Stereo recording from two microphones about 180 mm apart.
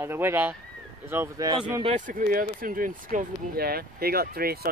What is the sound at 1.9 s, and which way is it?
Speech, 45° right (ahead or behind).